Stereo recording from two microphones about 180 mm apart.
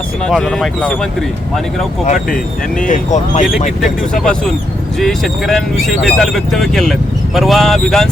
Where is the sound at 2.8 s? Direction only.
45° left (ahead or behind).